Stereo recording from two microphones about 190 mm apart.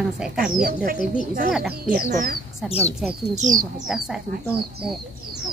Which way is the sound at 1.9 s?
50° right (ahead or behind).